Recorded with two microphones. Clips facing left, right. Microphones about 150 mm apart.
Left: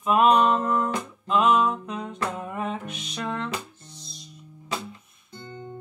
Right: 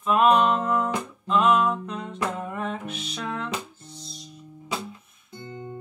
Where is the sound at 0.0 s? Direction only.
5° left (ahead or behind).